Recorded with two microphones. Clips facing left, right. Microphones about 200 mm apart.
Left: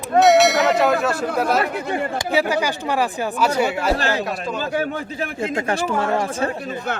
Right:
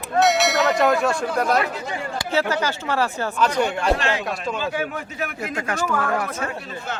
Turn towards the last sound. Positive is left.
turn(degrees=25)  # may be behind; listen again after turning